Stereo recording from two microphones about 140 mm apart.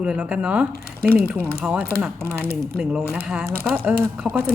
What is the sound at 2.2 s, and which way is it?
Speech, 15° left (ahead or behind).